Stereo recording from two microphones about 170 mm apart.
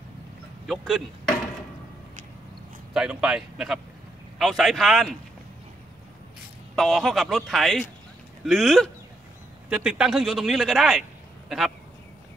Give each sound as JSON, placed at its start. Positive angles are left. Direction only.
{"t": 0.7, "sound": "speech", "side_deg": 0}
{"t": 2.9, "sound": "speech", "side_deg": -5}
{"t": 6.7, "sound": "a man's voice", "side_deg": 0}